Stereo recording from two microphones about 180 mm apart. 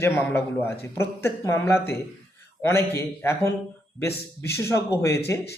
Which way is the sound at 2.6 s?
15° left (ahead or behind).